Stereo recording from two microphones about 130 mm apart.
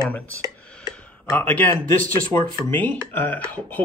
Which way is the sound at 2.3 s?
15° left (ahead or behind).